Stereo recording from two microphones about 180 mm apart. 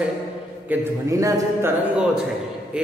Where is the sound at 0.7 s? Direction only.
10° right (ahead or behind).